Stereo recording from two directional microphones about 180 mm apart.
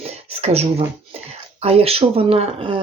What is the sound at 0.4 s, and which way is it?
Speech, 35° right (ahead or behind).